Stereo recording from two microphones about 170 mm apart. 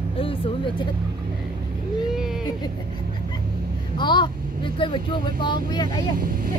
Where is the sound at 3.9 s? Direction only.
25° left (ahead or behind).